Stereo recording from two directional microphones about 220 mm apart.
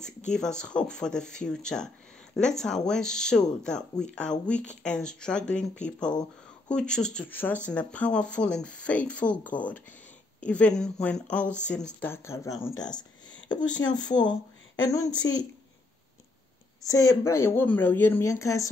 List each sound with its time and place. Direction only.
0.3 s a woman's voice: 5° left (ahead or behind); by 15.4 s 20° left (ahead or behind)
16.8 s a woman's voice: 15° left (ahead or behind)